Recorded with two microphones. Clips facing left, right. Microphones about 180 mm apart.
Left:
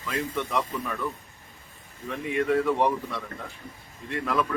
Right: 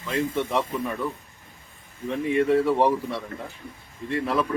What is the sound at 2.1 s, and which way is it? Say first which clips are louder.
Speech: right 4 dB; 30° right (ahead or behind).